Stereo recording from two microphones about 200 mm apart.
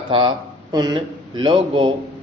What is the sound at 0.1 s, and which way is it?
A man's voice, 25° right (ahead or behind).